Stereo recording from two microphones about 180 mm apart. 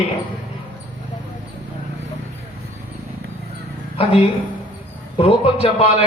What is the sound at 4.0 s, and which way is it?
A man's voice, 30° left (ahead or behind).